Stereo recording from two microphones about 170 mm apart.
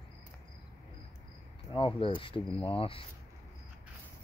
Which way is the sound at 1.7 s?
30° left (ahead or behind).